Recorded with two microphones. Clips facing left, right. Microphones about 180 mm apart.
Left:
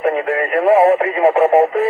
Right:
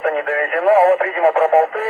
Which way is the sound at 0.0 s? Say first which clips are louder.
Left 2 dB; 15° left (ahead or behind).